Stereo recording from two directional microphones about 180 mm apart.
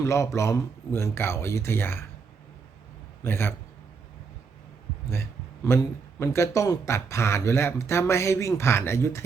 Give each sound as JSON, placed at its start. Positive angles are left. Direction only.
{"t": 0.0, "sound": "a man's voice", "side_deg": 15}
{"t": 3.2, "sound": "a man's voice", "side_deg": 10}
{"t": 5.6, "sound": "a man's voice", "side_deg": 15}